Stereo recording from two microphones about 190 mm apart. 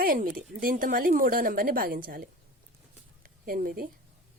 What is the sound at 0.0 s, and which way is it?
A woman's voice, 50° right (ahead or behind).